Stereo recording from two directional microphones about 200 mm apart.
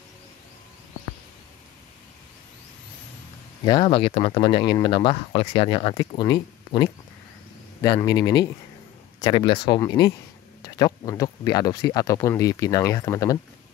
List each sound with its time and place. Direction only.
3.6 s speech: 25° left (ahead or behind)